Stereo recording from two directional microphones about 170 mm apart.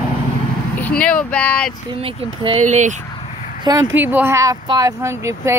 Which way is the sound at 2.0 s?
35° right (ahead or behind).